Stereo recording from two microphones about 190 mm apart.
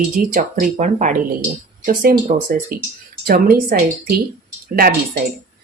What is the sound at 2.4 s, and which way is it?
Speech, 50° right (ahead or behind).